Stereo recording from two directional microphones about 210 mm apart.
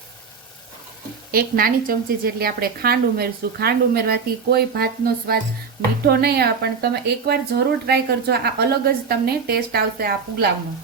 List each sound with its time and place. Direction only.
1.3 s a woman's voice: 45° right (ahead or behind)